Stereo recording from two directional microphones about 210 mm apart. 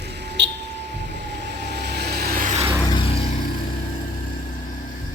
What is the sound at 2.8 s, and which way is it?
Vehicle, 20° left (ahead or behind).